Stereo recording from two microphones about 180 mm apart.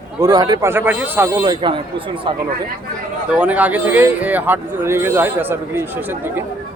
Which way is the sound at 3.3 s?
10° right (ahead or behind).